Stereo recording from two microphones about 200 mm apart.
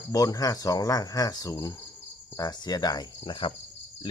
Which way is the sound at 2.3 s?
20° left (ahead or behind).